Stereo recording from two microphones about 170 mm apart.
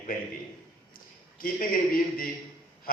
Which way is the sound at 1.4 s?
55° left (ahead or behind).